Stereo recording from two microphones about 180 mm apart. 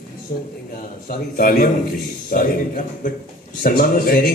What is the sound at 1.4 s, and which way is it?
A man's voice, 50° left (ahead or behind).